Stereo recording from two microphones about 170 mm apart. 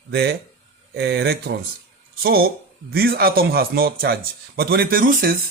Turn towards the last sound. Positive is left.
turn(degrees=-55)  # may be behind; listen again after turning